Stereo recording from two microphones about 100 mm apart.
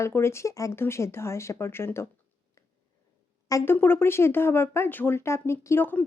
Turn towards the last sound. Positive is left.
turn(degrees=20)  # may be behind; listen again after turning